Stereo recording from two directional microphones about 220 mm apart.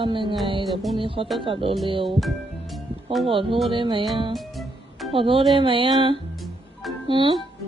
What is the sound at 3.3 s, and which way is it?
Speech, 25° right (ahead or behind).